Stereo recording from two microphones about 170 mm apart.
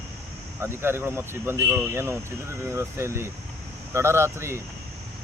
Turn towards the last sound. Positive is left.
turn(degrees=-15)  # may be behind; listen again after turning